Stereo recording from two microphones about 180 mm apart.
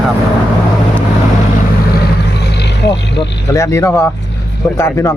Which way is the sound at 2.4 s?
70° left (ahead or behind).